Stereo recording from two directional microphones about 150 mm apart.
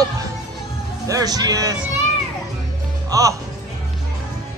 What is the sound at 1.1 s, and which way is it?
Speech, 25° right (ahead or behind).